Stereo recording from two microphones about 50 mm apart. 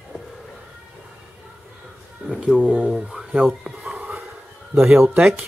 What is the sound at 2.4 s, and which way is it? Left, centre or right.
Speech, right.